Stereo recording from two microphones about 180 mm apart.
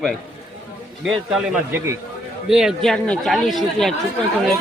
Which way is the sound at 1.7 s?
15° right (ahead or behind).